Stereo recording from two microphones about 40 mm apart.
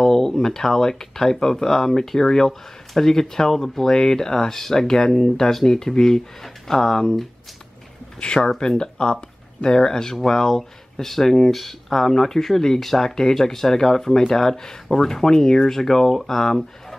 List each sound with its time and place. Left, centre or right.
0.0 s speech: centre
8.5 s speech: left